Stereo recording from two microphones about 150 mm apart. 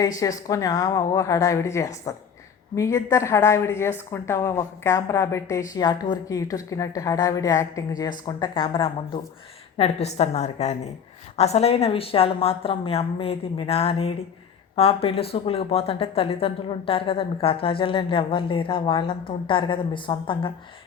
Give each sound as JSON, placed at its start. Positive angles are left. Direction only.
{"t": 0.2, "sound": "a woman's voice", "side_deg": 25}
{"t": 8.4, "sound": "a woman's voice", "side_deg": 35}